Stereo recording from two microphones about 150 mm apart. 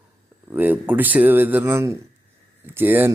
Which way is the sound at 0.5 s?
10° right (ahead or behind).